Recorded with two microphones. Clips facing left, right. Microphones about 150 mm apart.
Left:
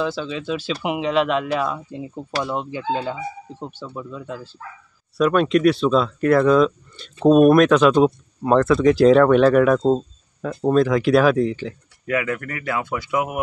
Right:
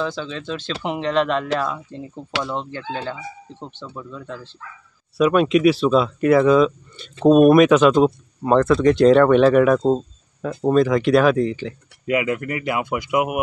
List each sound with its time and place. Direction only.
0.0 s speech: 5° left (ahead or behind)
5.1 s speech: 5° right (ahead or behind)
12.1 s speech: 20° right (ahead or behind)